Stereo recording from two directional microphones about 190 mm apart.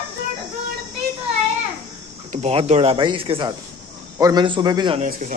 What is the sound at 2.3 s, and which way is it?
Speech, 35° right (ahead or behind).